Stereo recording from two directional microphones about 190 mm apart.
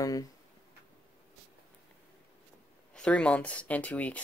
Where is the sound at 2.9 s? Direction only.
5° left (ahead or behind).